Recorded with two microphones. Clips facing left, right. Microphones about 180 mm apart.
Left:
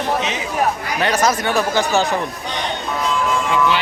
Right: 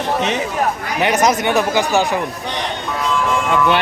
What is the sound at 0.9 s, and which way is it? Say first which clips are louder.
A man's voice: right 3 dB; 20° right (ahead or behind).